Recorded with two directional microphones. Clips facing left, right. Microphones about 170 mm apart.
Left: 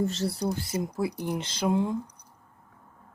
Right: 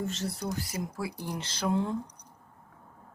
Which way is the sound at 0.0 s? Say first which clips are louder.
Left 6 dB; 35° left (ahead or behind).